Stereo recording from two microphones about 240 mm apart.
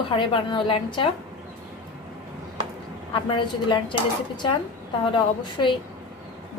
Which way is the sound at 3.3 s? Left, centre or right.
Left.